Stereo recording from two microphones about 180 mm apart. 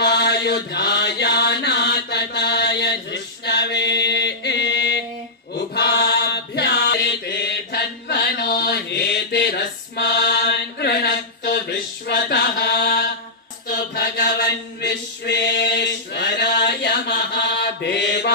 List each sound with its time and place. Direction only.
0.0 s mantra: 70° left (ahead or behind)
13.7 s chant: 65° left (ahead or behind)